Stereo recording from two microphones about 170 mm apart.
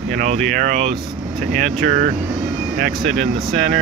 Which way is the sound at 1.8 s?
55° right (ahead or behind).